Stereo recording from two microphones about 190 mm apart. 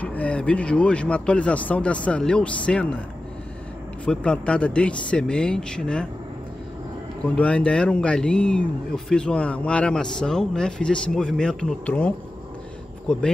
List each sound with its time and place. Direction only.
0.0 s speech: 5° left (ahead or behind)
4.0 s speech: 5° left (ahead or behind)
7.2 s speech: 5° left (ahead or behind)